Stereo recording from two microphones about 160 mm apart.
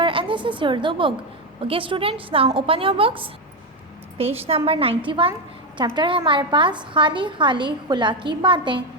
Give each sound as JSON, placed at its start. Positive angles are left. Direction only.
{"t": 0.0, "sound": "a woman's voice", "side_deg": -30}